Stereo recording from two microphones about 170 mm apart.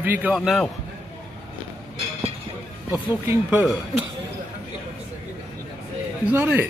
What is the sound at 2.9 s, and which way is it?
Speech, 10° right (ahead or behind).